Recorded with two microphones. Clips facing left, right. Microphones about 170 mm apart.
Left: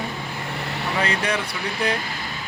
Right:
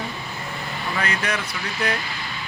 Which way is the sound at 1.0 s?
30° left (ahead or behind).